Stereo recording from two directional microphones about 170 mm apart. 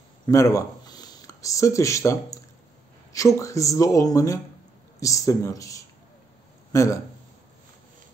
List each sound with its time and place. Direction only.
0.3 s speech: 20° left (ahead or behind)